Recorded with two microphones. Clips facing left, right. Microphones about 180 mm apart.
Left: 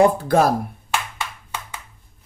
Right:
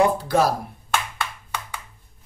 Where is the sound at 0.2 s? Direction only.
50° left (ahead or behind).